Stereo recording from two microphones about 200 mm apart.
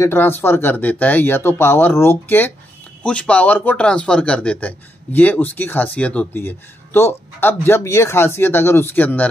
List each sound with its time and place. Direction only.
0.0 s speech: 10° left (ahead or behind)